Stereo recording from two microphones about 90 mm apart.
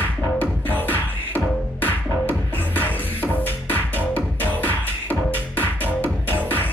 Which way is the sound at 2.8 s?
20° left (ahead or behind).